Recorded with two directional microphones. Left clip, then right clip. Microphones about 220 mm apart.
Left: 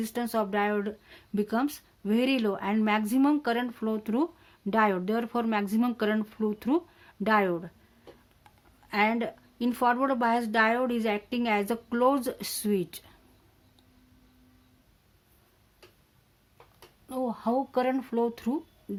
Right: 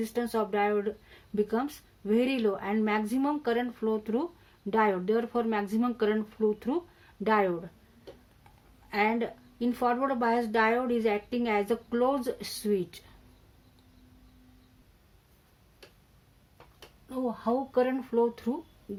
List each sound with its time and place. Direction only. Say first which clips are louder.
0.0 s speech: even; 45° left (ahead or behind)
8.9 s speech: left 1 dB; 40° left (ahead or behind)
17.1 s speech: left 1 dB; 45° left (ahead or behind)